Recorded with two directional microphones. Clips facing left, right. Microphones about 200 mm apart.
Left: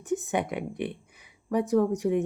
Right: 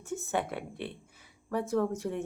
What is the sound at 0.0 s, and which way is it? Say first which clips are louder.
Speech: left 5 dB; 15° left (ahead or behind).